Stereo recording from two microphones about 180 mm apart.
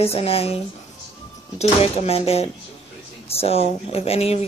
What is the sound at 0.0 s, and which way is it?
Speech, 35° left (ahead or behind).